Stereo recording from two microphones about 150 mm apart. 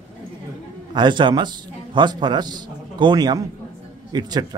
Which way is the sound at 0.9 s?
30° right (ahead or behind).